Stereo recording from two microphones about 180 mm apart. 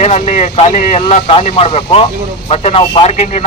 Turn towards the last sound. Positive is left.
turn(degrees=40)  # may be behind; listen again after turning